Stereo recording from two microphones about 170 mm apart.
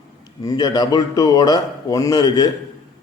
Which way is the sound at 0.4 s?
25° left (ahead or behind).